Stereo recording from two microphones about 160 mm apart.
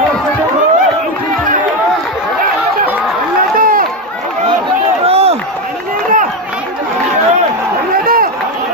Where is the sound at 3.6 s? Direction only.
60° right (ahead or behind).